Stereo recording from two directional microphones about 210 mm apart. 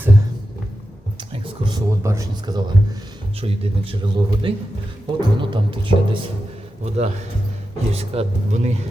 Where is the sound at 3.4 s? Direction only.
25° right (ahead or behind).